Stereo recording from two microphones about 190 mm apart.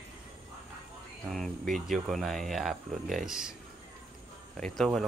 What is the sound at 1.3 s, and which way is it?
Speech, centre (ahead or behind).